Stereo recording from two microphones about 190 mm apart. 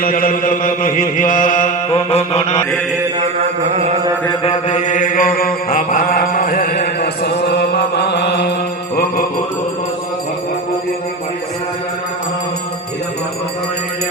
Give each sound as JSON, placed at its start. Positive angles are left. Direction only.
{"t": 0.0, "sound": "chant", "side_deg": 45}
{"t": 1.9, "sound": "mantra", "side_deg": 30}
{"t": 3.2, "sound": "mantra", "side_deg": -35}
{"t": 4.7, "sound": "mantra", "side_deg": 40}